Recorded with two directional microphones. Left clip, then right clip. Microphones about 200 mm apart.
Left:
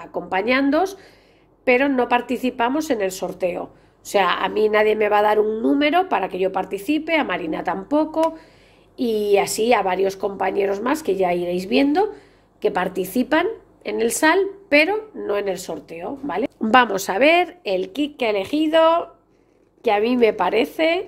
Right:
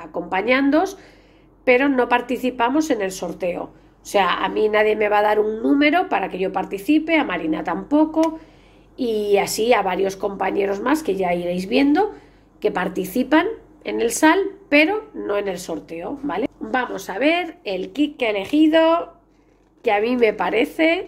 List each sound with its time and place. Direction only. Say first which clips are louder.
0.0 s a woman's voice: even; 20° left (ahead or behind)
16.6 s a woman's voice: left 8 dB; 50° left (ahead or behind); by 21.0 s 20° left (ahead or behind)